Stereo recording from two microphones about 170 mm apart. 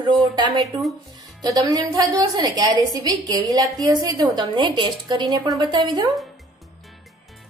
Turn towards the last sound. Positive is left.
turn(degrees=-25)  # may be behind; listen again after turning